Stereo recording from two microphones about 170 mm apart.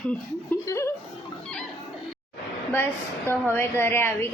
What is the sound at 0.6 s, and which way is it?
Speech, 15° left (ahead or behind).